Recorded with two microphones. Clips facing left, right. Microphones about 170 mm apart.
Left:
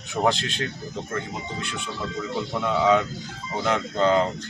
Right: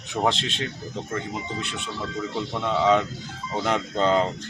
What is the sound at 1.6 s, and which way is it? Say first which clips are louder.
Speech: even; centre (ahead or behind).